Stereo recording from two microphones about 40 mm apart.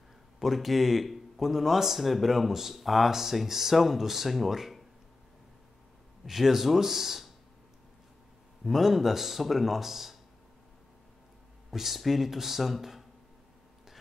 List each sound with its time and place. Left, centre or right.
0.4 s speech: centre
6.2 s speech: centre
8.6 s speech: centre
11.7 s speech: centre